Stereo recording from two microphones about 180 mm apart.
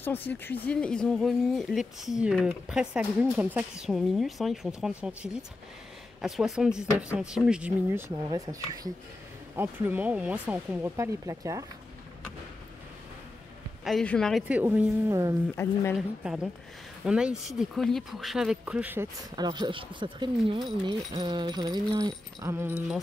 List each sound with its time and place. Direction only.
0.0 s speech: 10° left (ahead or behind); by 8.0 s 5° right (ahead or behind)
8.1 s a sound: 20° right (ahead or behind)
9.6 s speech: 10° right (ahead or behind)
13.8 s speech: 5° left (ahead or behind)
14.5 s speech: 10° right (ahead or behind)
15.5 s speech: 15° left (ahead or behind)
16.2 s speech: 5° right (ahead or behind)
19.3 s a sound: 25° right (ahead or behind)